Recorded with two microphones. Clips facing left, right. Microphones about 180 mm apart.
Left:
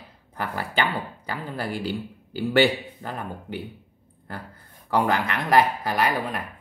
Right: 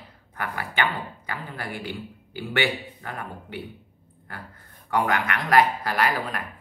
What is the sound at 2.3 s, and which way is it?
Speech, 35° left (ahead or behind).